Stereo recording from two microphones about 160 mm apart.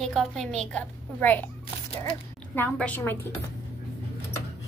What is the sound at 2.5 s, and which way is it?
Speech, 10° left (ahead or behind).